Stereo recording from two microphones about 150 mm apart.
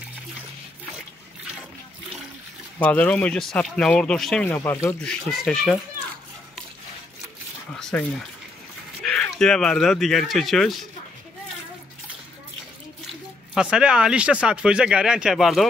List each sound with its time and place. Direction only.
2.8 s speech: 10° left (ahead or behind)
4.5 s speech: 15° left (ahead or behind)
5.0 s speech: centre (ahead or behind)
7.8 s speech: 5° left (ahead or behind)
13.6 s speech: 5° right (ahead or behind)